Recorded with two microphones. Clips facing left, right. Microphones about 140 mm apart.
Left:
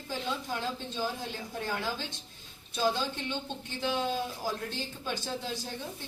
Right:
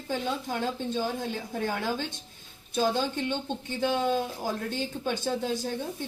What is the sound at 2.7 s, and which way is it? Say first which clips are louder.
A woman's voice: right 4 dB; 50° right (ahead or behind).